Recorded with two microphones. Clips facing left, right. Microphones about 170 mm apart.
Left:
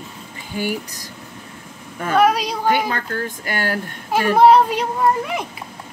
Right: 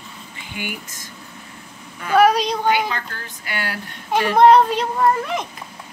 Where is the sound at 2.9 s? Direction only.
45° left (ahead or behind).